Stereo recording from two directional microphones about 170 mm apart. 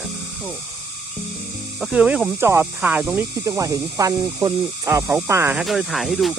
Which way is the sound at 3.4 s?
20° right (ahead or behind).